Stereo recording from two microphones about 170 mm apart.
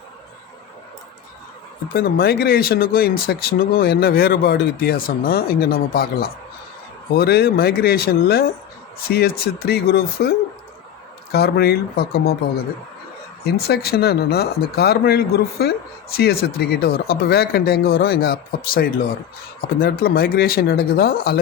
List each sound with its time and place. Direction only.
1.9 s speech: 65° left (ahead or behind)
13.4 s speech: 65° left (ahead or behind)